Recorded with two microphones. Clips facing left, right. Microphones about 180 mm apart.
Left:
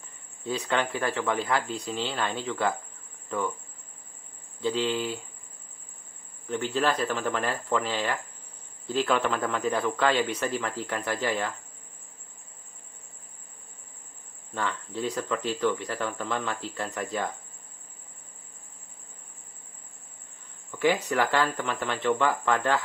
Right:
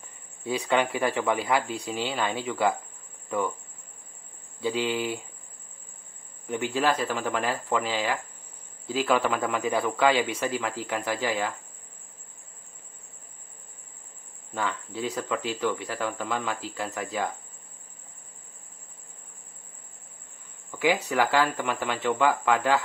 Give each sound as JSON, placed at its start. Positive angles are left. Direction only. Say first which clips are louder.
{"t": 0.5, "sound": "speech", "louder": "right 3 dB", "side_deg": -10}
{"t": 4.6, "sound": "speech", "louder": "even", "side_deg": -10}
{"t": 6.4, "sound": "speech", "louder": "right 1 dB", "side_deg": -10}
{"t": 14.5, "sound": "speech", "louder": "right 1 dB", "side_deg": -5}
{"t": 20.7, "sound": "speech", "louder": "even", "side_deg": -10}